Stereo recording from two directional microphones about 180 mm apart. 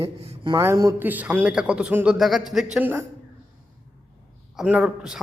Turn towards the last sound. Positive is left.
turn(degrees=-5)  # may be behind; listen again after turning